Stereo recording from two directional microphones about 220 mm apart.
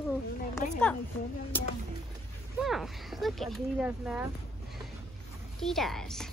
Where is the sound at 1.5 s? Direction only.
10° left (ahead or behind).